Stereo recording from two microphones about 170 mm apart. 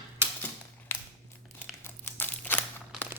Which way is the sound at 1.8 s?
15° left (ahead or behind).